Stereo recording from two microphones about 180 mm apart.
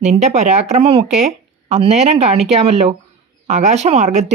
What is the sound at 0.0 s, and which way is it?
Speech, 40° right (ahead or behind).